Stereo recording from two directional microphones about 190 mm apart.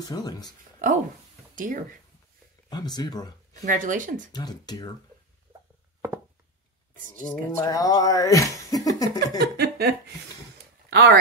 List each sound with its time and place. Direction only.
0.1 s speech: 20° left (ahead or behind)
1.5 s speech: 45° right (ahead or behind)
2.7 s speech: 20° left (ahead or behind)
3.6 s speech: 45° right (ahead or behind)
4.3 s speech: 20° left (ahead or behind)
7.2 s speech: 15° left (ahead or behind)
9.6 s speech: 55° right (ahead or behind)